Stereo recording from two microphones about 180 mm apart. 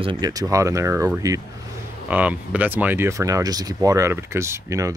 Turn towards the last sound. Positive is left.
turn(degrees=-15)  # may be behind; listen again after turning